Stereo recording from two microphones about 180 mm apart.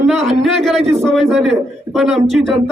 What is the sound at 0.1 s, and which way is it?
Speech, centre (ahead or behind).